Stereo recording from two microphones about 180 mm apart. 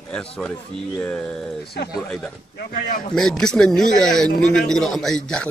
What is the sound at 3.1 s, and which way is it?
A man's voice, centre (ahead or behind).